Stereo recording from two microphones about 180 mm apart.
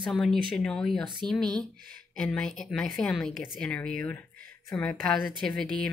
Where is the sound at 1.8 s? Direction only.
55° right (ahead or behind).